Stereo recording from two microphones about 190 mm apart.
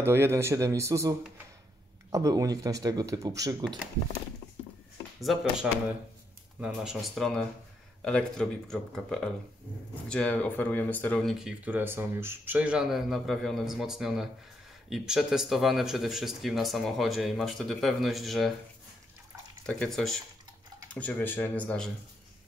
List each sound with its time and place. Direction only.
0.0 s a man's voice: 15° right (ahead or behind)
5.2 s speech: centre (ahead or behind)
19.6 s speech: 5° left (ahead or behind)